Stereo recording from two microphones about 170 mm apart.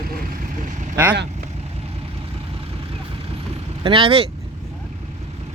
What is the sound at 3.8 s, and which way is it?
Speech, 30° right (ahead or behind).